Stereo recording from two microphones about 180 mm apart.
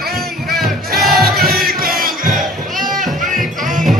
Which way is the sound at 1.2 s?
55° right (ahead or behind).